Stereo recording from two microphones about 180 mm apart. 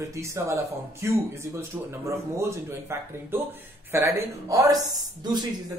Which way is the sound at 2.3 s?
15° right (ahead or behind).